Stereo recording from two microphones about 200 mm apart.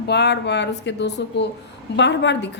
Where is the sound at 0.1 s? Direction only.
55° left (ahead or behind).